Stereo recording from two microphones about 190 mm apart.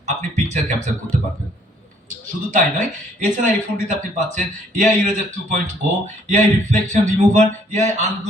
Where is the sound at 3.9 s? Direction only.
40° right (ahead or behind).